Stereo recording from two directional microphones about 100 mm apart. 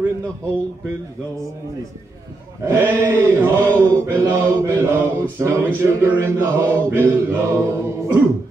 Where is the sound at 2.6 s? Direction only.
25° right (ahead or behind).